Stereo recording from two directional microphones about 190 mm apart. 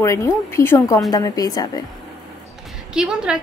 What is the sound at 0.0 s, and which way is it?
A woman's voice, 15° left (ahead or behind).